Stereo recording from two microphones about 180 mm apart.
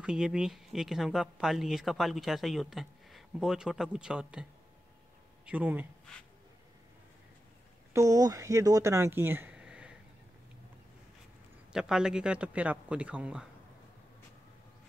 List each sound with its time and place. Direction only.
0.0 s speech: 5° right (ahead or behind)
7.9 s speech: 20° right (ahead or behind)
11.7 s speech: 5° right (ahead or behind)